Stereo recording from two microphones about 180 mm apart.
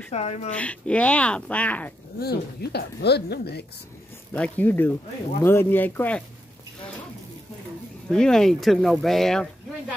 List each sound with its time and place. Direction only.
0.1 s speech: 35° left (ahead or behind)
0.5 s speech: 5° left (ahead or behind)
2.1 s speech: 60° left (ahead or behind)
4.3 s speech: 10° left (ahead or behind)
8.1 s speech: 5° left (ahead or behind)